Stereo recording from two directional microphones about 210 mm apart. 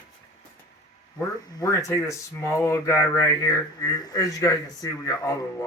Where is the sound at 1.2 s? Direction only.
15° left (ahead or behind).